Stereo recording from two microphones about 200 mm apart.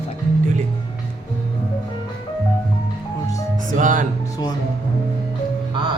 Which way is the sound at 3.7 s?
40° right (ahead or behind).